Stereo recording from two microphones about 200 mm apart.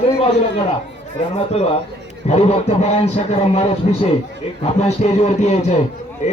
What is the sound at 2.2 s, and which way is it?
A man's voice, 30° left (ahead or behind).